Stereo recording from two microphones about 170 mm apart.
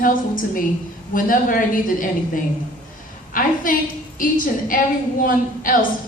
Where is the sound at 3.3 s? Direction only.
50° left (ahead or behind).